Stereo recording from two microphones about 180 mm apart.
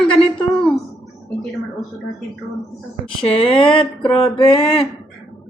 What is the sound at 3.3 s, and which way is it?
Speech, 30° left (ahead or behind).